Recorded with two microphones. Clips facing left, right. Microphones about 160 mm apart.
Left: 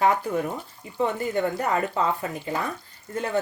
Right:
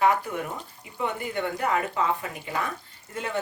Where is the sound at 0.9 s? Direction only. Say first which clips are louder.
Left 5 dB; 35° left (ahead or behind).